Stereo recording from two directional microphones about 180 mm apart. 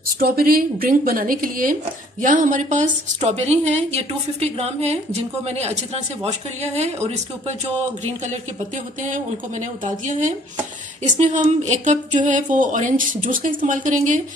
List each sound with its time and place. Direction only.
0.2 s a woman's voice: 55° right (ahead or behind); by 7.5 s 40° right (ahead or behind)
9.0 s speech: 45° right (ahead or behind)